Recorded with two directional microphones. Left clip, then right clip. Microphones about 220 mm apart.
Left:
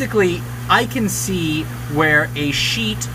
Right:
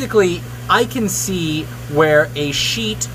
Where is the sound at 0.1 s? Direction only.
15° right (ahead or behind).